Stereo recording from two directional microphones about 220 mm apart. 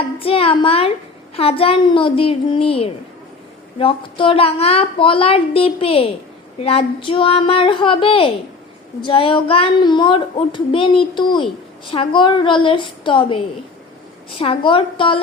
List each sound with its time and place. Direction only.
0.2 s a woman's voice: 25° left (ahead or behind)